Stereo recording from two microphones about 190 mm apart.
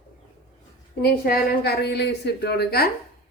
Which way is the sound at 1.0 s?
50° left (ahead or behind).